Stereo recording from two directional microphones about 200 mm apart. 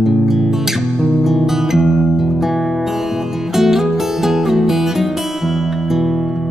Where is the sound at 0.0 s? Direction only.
Centre (ahead or behind).